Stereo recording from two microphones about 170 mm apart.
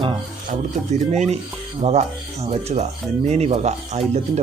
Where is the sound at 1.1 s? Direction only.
40° right (ahead or behind).